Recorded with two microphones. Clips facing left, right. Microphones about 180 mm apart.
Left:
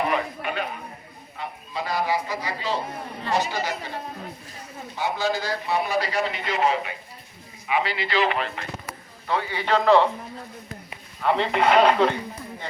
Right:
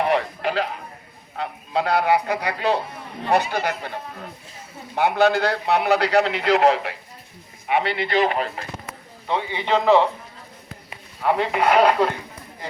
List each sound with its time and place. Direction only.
0.0 s a man's voice: 80° right
1.7 s speech: 65° right (ahead or behind)
4.9 s a man's voice: 60° right (ahead or behind)
7.7 s a man's voice: 60° right (ahead or behind); by 8.4 s 45° right (ahead or behind)
9.2 s a man's voice: 20° right (ahead or behind)
11.2 s speech: 10° right (ahead or behind)